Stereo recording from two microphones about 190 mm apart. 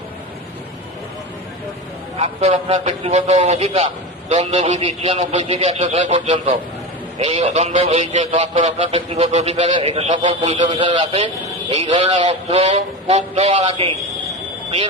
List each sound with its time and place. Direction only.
2.1 s a man's voice: 30° right (ahead or behind)
6.1 s a man's voice: 25° right (ahead or behind)